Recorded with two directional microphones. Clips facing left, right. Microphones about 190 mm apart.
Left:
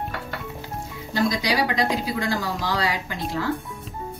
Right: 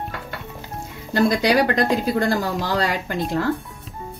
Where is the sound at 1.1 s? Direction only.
60° right (ahead or behind).